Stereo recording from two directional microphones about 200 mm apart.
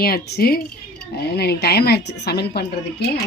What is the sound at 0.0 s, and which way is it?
Speech, 50° left (ahead or behind).